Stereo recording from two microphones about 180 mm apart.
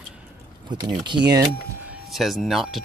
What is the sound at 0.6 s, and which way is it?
Speech, 25° right (ahead or behind).